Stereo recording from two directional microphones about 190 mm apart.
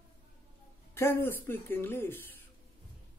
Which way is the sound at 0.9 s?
10° left (ahead or behind).